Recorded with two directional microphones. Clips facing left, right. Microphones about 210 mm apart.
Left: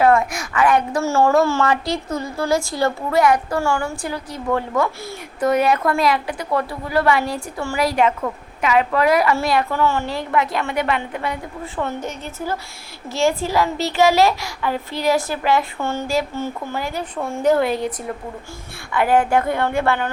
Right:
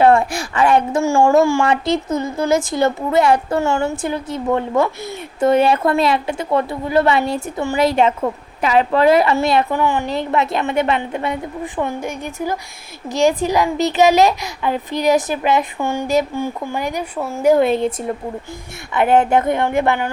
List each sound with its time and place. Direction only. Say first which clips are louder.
0.0 s a woman's voice: right 3 dB; 30° right (ahead or behind)
1.0 s a child's voice: right 3 dB; 15° right (ahead or behind)
17.2 s speech: right 3 dB; 5° right (ahead or behind)
17.6 s a woman's voice: right 4 dB; 25° right (ahead or behind)
18.9 s a woman's voice: right 3 dB; 25° right (ahead or behind)